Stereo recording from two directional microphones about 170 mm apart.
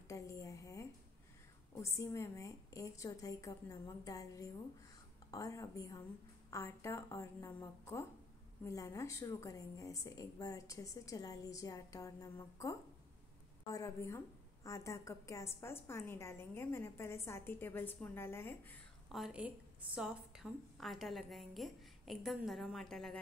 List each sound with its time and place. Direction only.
0.1 s a woman's voice: 20° left (ahead or behind)
19.1 s a woman's voice: 5° right (ahead or behind)